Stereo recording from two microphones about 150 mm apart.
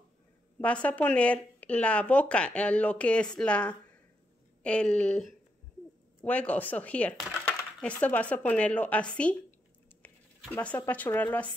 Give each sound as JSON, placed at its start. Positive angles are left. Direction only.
{"t": 0.6, "sound": "speech", "side_deg": 10}
{"t": 10.0, "sound": "a sound", "side_deg": 10}
{"t": 10.9, "sound": "speech", "side_deg": 10}